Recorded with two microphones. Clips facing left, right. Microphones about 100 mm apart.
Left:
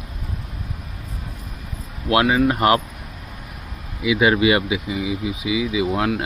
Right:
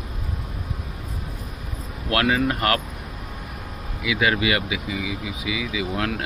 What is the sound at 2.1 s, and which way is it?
Speech, 20° left (ahead or behind).